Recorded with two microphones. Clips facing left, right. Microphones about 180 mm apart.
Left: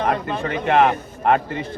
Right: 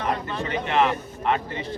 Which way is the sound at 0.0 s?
55° left (ahead or behind).